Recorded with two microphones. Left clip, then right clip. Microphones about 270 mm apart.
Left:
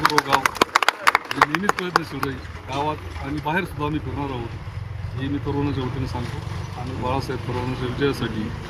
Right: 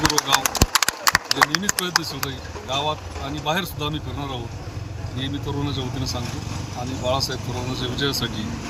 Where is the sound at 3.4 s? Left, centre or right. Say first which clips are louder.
Even; centre.